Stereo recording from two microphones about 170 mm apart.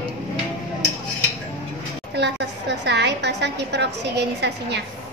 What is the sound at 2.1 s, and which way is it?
A woman's voice, 90° right.